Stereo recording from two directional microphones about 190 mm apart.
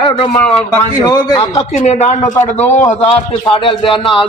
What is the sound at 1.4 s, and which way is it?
Speech, 35° left (ahead or behind).